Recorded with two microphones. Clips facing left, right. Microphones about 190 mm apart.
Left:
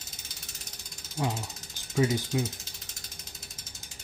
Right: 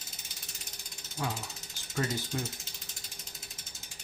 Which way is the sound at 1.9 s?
10° left (ahead or behind).